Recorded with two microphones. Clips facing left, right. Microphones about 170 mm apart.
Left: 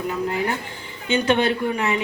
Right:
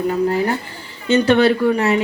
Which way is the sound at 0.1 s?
35° right (ahead or behind).